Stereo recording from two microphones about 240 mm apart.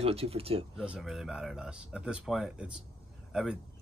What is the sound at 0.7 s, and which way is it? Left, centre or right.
Speech, centre.